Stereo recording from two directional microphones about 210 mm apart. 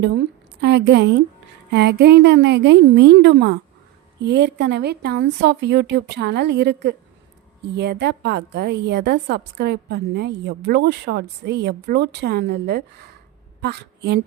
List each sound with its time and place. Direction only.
0.6 s a woman's voice: 55° right (ahead or behind)